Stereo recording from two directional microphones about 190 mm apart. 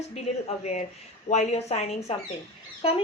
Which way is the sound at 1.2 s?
35° left (ahead or behind).